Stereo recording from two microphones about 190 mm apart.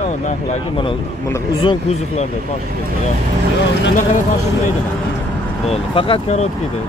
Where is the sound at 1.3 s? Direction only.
25° left (ahead or behind).